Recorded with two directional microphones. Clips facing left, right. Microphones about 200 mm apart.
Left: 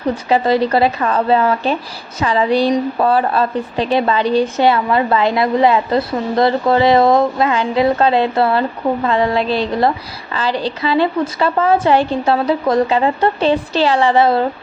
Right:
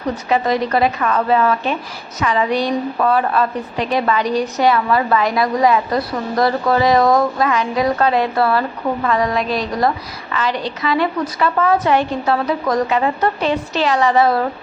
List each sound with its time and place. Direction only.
0.3 s a woman's voice: 30° left (ahead or behind)